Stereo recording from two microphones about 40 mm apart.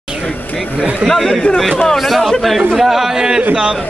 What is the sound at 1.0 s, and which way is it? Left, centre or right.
A man's voice, centre.